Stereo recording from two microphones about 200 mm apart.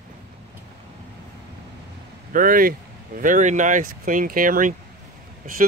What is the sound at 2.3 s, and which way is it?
Speech, 45° right (ahead or behind).